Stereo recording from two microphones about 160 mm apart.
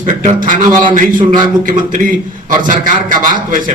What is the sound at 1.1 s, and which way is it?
Speech, 30° right (ahead or behind).